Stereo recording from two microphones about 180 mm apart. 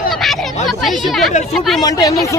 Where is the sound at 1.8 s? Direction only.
20° left (ahead or behind).